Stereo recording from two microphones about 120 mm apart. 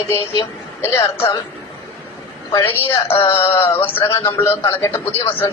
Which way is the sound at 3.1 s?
50° left (ahead or behind).